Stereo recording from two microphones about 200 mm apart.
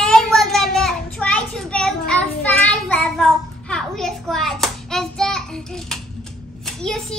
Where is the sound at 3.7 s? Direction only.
Centre (ahead or behind).